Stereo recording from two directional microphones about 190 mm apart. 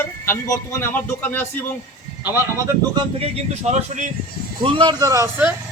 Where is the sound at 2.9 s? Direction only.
30° right (ahead or behind).